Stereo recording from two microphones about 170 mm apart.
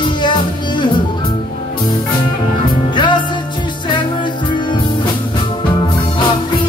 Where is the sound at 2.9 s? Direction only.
30° left (ahead or behind).